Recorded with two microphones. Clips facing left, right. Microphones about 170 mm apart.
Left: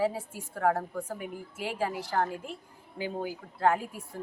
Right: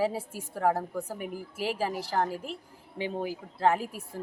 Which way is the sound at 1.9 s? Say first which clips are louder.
Right 1 dB; 40° right (ahead or behind).